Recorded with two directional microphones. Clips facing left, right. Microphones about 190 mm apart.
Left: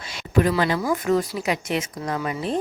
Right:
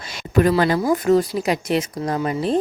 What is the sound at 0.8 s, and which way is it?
Speech, 35° right (ahead or behind).